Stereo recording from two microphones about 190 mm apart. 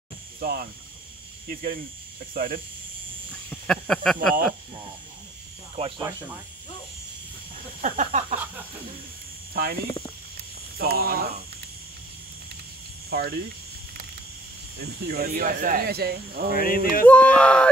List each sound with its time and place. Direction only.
0.4 s speech: 50° right (ahead or behind)
3.3 s speech: 5° left (ahead or behind)
5.8 s speech: 25° right (ahead or behind)
7.8 s a sound: 40° right (ahead or behind)
9.5 s speech: 55° right (ahead or behind)
10.8 s speech: 55° right (ahead or behind)
13.1 s speech: 55° right (ahead or behind)
14.8 s speech: 55° right (ahead or behind)
16.5 s a sound: 50° left (ahead or behind)
17.0 s speech: 5° left (ahead or behind)